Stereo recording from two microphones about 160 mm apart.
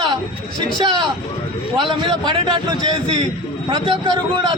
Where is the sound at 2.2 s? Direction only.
25° right (ahead or behind).